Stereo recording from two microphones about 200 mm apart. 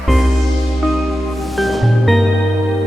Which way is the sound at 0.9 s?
Centre (ahead or behind).